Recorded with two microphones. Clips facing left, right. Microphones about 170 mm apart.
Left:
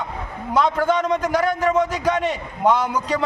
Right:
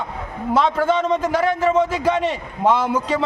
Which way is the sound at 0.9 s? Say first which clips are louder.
Right 1 dB; 25° right (ahead or behind).